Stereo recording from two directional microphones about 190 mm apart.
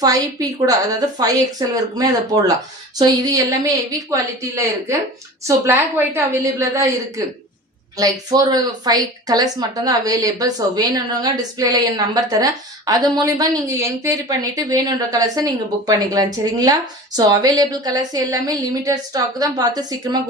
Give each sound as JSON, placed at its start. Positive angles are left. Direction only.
{"t": 0.0, "sound": "a woman's voice", "side_deg": -20}
{"t": 7.9, "sound": "a woman's voice", "side_deg": -20}